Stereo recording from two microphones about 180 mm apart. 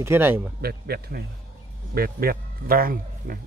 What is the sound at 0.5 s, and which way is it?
A man's voice, 60° right (ahead or behind).